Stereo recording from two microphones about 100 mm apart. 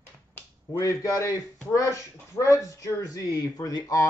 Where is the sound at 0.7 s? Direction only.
35° left (ahead or behind).